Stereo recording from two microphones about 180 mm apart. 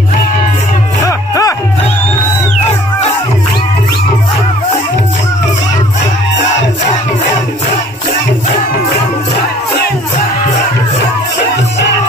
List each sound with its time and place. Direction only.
1.0 s music: 20° left (ahead or behind)